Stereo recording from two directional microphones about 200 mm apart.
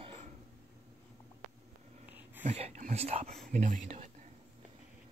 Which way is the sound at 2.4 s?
35° right (ahead or behind).